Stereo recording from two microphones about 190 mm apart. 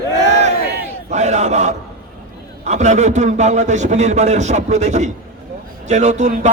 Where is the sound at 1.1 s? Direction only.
35° right (ahead or behind).